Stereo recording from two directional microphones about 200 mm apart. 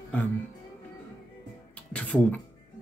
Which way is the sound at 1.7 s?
5° left (ahead or behind).